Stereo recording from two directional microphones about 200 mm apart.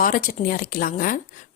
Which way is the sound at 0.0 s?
45° left (ahead or behind).